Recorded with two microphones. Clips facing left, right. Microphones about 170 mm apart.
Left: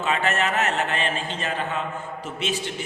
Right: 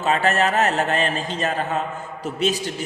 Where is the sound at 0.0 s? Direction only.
40° right (ahead or behind).